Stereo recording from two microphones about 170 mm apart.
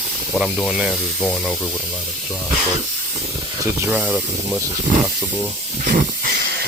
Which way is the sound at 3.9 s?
5° right (ahead or behind).